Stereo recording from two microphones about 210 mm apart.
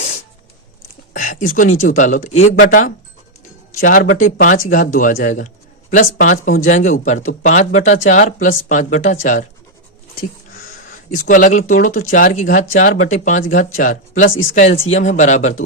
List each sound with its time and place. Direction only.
1.1 s a sound: 40° left (ahead or behind)
1.8 s a man's voice: 35° left (ahead or behind)
11.3 s speech: 35° left (ahead or behind)